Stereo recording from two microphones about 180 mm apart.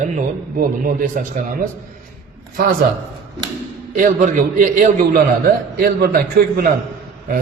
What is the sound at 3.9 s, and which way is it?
A man's voice, 50° right (ahead or behind).